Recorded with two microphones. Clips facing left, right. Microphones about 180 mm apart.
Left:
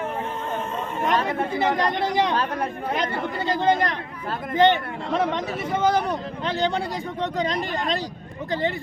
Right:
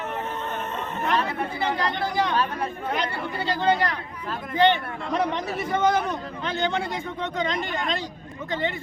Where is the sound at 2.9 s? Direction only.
45° left (ahead or behind).